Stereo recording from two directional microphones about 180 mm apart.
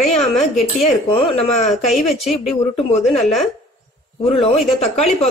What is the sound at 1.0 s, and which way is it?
Speech, 30° left (ahead or behind).